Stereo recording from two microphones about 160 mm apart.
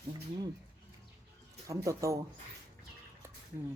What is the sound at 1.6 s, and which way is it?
Speech, 20° right (ahead or behind).